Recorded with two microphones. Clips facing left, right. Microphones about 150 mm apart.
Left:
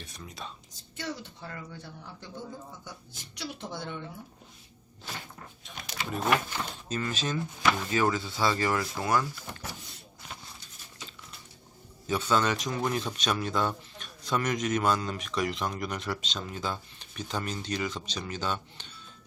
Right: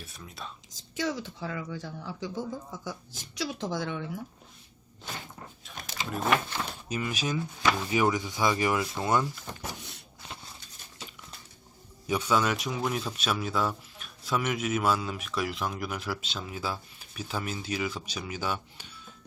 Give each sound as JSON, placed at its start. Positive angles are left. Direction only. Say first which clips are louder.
{"t": 0.0, "sound": "speech", "louder": "even", "side_deg": 0}
{"t": 0.7, "sound": "a woman's voice", "louder": "right 7 dB", "side_deg": -90}
{"t": 6.1, "sound": "speech", "louder": "even", "side_deg": 0}
{"t": 6.5, "sound": "speech", "louder": "even", "side_deg": -10}
{"t": 12.0, "sound": "speech", "louder": "even", "side_deg": -10}